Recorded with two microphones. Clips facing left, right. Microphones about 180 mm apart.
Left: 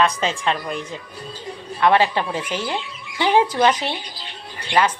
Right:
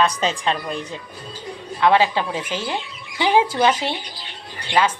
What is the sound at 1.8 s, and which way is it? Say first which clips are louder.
Speech: even; 15° right (ahead or behind).